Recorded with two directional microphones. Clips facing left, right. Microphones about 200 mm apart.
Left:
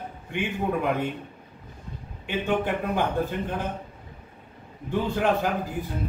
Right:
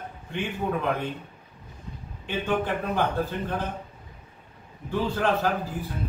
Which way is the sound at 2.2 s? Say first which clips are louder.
Left 1 dB; 15° left (ahead or behind).